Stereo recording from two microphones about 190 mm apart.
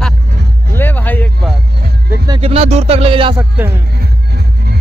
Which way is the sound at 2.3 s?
30° right (ahead or behind).